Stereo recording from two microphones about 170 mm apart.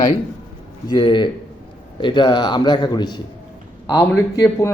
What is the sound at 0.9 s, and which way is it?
Speech, 25° left (ahead or behind).